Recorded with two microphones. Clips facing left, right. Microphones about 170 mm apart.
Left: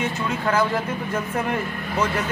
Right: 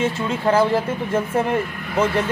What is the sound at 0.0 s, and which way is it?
Speech, 30° right (ahead or behind).